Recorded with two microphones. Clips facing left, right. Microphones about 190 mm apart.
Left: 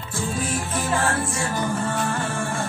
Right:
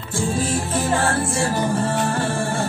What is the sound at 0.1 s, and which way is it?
Music, 30° right (ahead or behind).